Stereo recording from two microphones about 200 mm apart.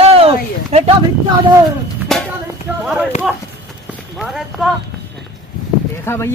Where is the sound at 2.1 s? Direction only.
Centre (ahead or behind).